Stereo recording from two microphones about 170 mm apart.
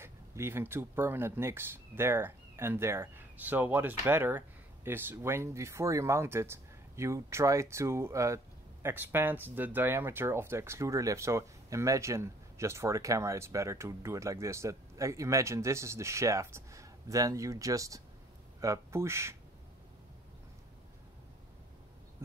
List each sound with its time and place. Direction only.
0.0 s speech: 15° right (ahead or behind)